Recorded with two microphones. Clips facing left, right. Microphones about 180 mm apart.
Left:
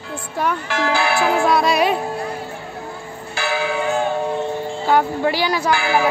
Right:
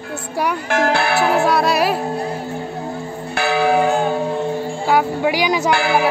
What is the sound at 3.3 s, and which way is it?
Church bell, 60° right (ahead or behind).